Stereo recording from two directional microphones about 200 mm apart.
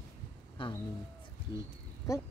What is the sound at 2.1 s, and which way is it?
Speech, 15° left (ahead or behind).